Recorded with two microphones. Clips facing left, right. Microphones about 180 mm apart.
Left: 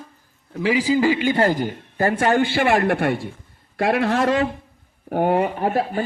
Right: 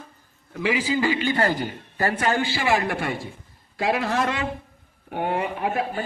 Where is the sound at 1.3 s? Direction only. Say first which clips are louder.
Left 4 dB; 45° left (ahead or behind); by 4.2 s 65° left (ahead or behind).